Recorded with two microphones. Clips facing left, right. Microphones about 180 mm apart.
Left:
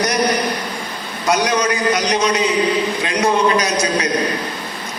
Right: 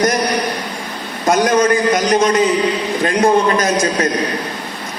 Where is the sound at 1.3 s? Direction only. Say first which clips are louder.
Right 4 dB; 50° right (ahead or behind).